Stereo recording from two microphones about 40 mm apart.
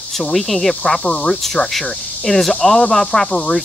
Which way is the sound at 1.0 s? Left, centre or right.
Left.